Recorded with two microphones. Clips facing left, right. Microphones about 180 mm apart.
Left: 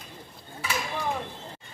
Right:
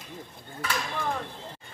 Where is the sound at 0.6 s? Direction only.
5° left (ahead or behind).